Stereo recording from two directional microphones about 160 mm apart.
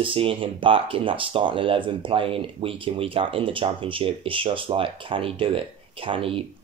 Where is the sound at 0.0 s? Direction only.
35° right (ahead or behind).